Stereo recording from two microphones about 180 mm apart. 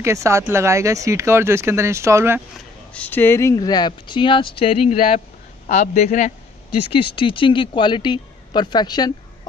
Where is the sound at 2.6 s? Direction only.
10° left (ahead or behind); by 5.0 s 30° left (ahead or behind).